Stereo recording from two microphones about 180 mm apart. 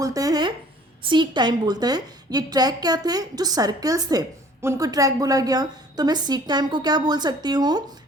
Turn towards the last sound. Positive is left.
turn(degrees=-25)  # may be behind; listen again after turning